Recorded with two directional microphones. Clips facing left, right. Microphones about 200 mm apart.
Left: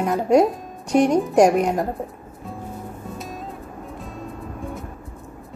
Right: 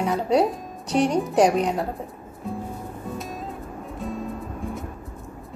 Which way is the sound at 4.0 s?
Centre (ahead or behind).